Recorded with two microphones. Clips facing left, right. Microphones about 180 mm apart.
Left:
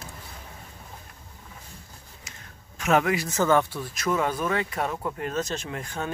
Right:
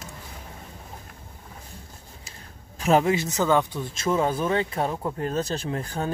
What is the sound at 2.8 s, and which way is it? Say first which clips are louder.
Speech: right 2 dB; 30° right (ahead or behind).